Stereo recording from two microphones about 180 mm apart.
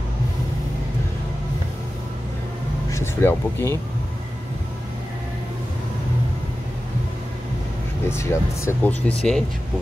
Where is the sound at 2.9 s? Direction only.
15° left (ahead or behind).